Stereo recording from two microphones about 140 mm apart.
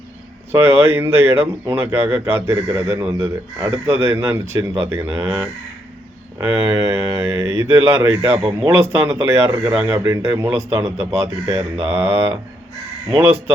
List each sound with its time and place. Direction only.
0.6 s a man's voice: 15° right (ahead or behind)